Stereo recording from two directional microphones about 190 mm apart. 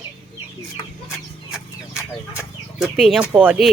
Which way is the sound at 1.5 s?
Centre (ahead or behind).